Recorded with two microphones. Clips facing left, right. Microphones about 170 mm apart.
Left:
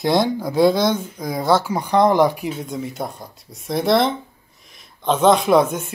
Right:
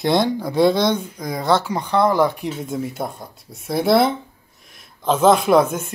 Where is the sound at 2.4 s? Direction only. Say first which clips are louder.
Right 1 dB; centre (ahead or behind).